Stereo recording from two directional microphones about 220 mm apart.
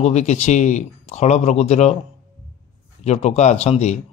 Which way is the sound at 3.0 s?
30° left (ahead or behind).